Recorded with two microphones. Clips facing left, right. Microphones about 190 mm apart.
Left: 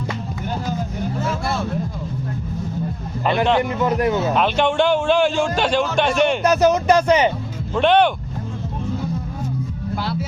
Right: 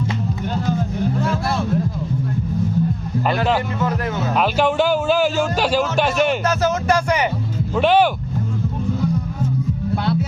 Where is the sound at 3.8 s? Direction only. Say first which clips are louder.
Left 4 dB; 15° left (ahead or behind).